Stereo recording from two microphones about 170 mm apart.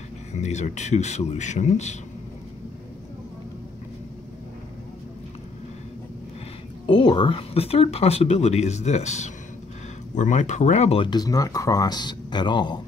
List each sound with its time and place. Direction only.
0.3 s speech: 40° left (ahead or behind)
6.9 s speech: 25° left (ahead or behind)